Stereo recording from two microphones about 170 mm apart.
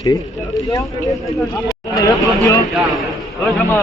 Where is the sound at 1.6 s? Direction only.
20° left (ahead or behind).